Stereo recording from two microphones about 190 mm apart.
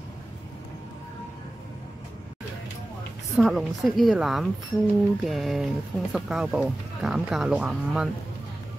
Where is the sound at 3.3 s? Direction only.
Centre (ahead or behind).